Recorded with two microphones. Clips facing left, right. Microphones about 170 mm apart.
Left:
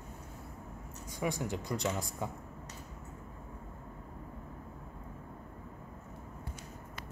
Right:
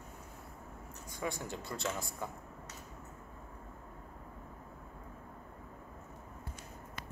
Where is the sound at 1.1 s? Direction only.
15° left (ahead or behind).